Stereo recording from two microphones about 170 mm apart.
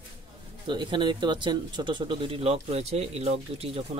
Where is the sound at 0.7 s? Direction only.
25° right (ahead or behind).